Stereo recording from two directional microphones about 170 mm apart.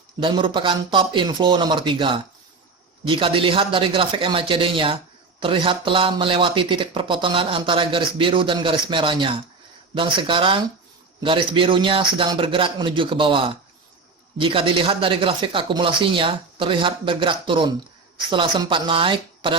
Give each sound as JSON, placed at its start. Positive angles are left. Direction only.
{"t": 0.2, "sound": "speech", "side_deg": -30}